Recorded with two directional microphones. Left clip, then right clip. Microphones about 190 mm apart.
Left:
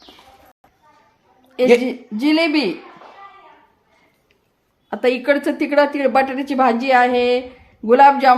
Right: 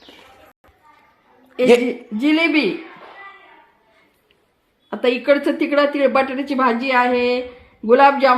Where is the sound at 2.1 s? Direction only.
10° left (ahead or behind).